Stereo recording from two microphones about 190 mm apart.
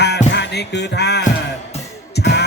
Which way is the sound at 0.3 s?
60° left (ahead or behind).